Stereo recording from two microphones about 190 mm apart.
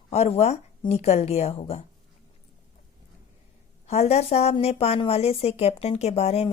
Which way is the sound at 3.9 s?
35° left (ahead or behind).